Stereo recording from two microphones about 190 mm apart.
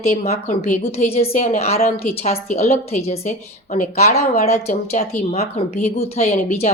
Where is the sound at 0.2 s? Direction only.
35° left (ahead or behind).